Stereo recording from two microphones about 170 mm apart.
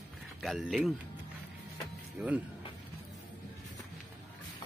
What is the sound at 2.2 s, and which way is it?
Speech, 5° right (ahead or behind).